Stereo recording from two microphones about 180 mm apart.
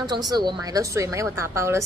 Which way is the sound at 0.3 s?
25° right (ahead or behind).